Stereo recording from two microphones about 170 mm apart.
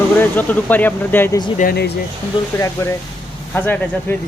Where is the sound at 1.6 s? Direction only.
65° left (ahead or behind).